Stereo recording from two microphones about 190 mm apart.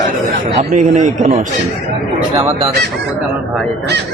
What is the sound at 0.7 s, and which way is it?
Speech, 40° right (ahead or behind).